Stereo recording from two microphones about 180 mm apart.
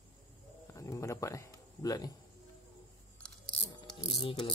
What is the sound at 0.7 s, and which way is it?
A man's voice, 15° left (ahead or behind).